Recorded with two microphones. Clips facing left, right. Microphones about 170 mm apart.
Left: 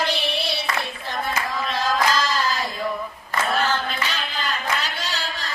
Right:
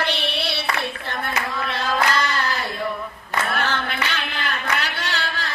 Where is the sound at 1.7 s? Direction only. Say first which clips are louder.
Left 1 dB; 60° right (ahead or behind).